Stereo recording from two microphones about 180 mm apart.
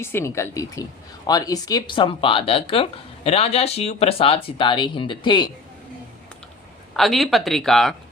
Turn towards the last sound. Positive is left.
turn(degrees=0)  # may be behind; listen again after turning